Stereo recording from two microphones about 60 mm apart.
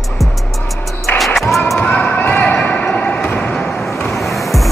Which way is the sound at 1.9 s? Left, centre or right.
Left.